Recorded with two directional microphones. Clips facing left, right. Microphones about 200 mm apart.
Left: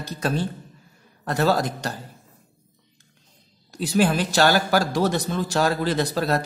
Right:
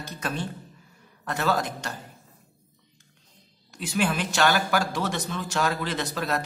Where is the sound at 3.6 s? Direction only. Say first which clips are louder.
Left 6 dB; 35° left (ahead or behind).